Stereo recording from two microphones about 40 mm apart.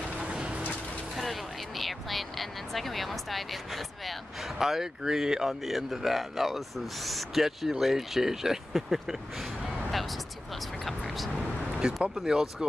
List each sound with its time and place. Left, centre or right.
0.2 s a sound: right
1.1 s speech: centre
11.3 s vehicle: right
12.2 s speech: centre